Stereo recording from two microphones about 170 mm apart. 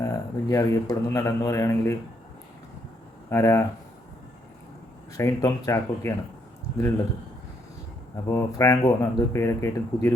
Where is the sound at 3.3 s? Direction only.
15° left (ahead or behind).